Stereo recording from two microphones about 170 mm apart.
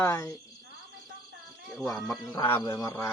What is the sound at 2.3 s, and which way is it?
Speech, 20° left (ahead or behind).